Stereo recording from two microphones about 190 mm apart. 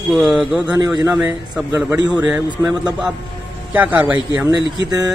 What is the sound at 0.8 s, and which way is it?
Speech, 20° right (ahead or behind).